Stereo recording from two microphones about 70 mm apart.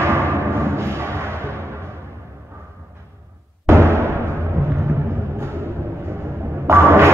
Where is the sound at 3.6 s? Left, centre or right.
Right.